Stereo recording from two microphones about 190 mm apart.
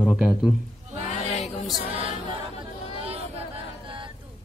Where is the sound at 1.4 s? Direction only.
Centre (ahead or behind).